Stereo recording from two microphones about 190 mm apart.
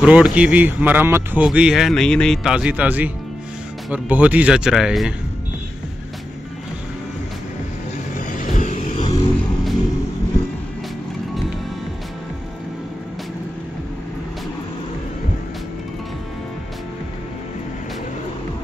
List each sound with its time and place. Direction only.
0.0 s speech: 5° right (ahead or behind)
8.3 s vehicle: 45° left (ahead or behind)